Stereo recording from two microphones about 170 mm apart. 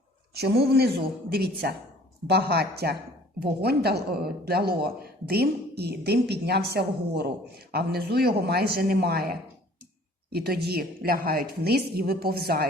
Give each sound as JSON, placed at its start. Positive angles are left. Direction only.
{"t": 0.3, "sound": "speech", "side_deg": -70}
{"t": 10.2, "sound": "a woman's voice", "side_deg": -65}